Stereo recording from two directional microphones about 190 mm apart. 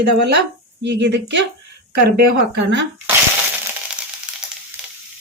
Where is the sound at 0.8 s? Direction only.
65° right (ahead or behind).